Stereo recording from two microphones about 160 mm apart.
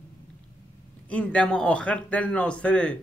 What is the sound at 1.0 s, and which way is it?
Speech, 10° left (ahead or behind).